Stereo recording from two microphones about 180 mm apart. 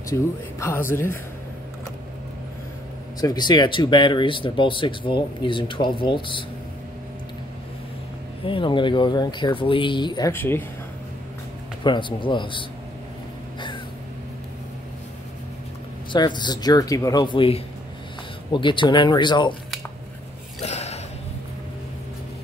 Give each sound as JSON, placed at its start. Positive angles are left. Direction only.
{"t": 0.1, "sound": "speech", "side_deg": 15}
{"t": 3.2, "sound": "speech", "side_deg": 20}
{"t": 8.5, "sound": "speech", "side_deg": 30}
{"t": 10.3, "sound": "speech", "side_deg": 10}
{"t": 11.8, "sound": "speech", "side_deg": 25}
{"t": 16.1, "sound": "speech", "side_deg": 25}
{"t": 20.6, "sound": "gasp", "side_deg": 35}